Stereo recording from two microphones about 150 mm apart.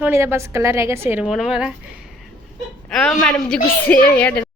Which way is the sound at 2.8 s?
5° left (ahead or behind).